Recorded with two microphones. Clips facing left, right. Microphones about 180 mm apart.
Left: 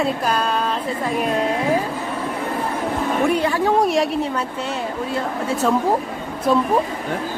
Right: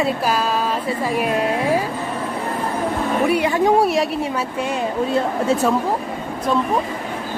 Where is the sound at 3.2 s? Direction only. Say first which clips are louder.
Right 2 dB; 10° right (ahead or behind).